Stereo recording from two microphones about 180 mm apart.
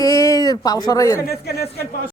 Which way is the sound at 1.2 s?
60° left (ahead or behind).